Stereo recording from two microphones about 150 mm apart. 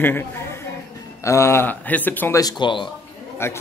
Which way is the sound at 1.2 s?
20° left (ahead or behind).